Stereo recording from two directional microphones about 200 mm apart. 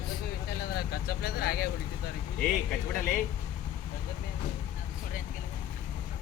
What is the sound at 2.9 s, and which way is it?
Speech, 10° left (ahead or behind).